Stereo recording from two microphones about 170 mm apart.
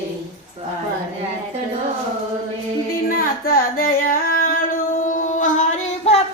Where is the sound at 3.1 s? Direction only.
60° left (ahead or behind).